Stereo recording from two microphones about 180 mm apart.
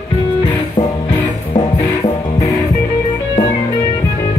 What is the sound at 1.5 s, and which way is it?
Music, 30° left (ahead or behind).